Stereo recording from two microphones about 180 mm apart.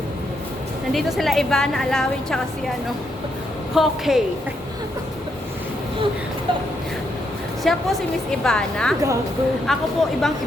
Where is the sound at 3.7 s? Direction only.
Centre (ahead or behind).